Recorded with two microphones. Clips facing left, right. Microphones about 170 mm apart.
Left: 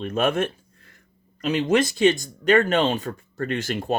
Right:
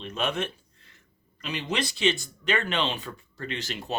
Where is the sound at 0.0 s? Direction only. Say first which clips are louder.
Left 7 dB; 50° left (ahead or behind).